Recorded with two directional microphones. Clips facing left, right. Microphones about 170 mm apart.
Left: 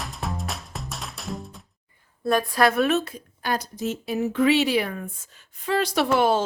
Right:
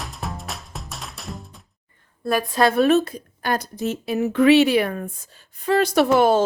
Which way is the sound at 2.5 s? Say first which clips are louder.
Right 6 dB; 25° right (ahead or behind).